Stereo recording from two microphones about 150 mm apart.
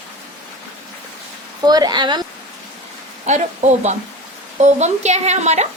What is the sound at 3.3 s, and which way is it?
A woman's voice, 50° right (ahead or behind).